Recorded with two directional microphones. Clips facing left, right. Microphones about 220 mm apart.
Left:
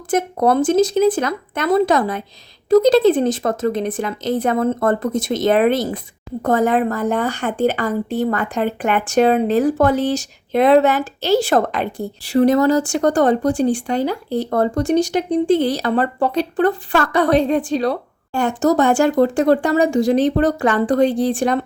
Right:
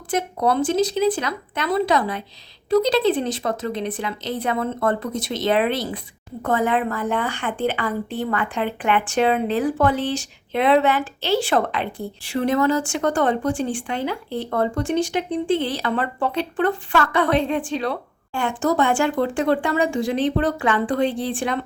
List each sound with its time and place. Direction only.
0.1 s a woman's voice: 45° left (ahead or behind)